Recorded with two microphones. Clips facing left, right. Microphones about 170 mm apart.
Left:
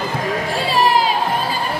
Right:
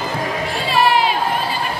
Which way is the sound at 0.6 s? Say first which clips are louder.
Right 1 dB; 35° left (ahead or behind).